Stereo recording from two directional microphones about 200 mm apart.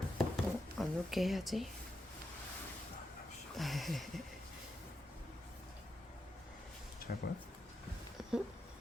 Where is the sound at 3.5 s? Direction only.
Centre (ahead or behind).